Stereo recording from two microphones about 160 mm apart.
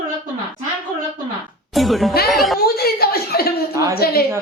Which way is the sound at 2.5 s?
75° left (ahead or behind).